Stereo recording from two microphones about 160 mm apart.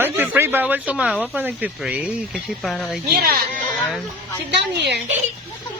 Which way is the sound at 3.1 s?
70° right (ahead or behind).